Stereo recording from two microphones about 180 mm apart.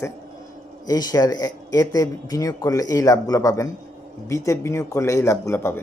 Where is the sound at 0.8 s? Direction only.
20° left (ahead or behind).